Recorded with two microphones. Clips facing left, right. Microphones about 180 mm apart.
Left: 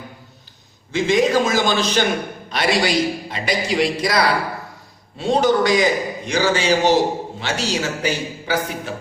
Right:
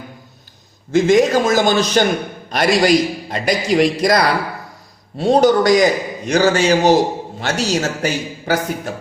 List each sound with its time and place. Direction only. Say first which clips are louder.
0.9 s a man's voice: right 4 dB; 45° right (ahead or behind)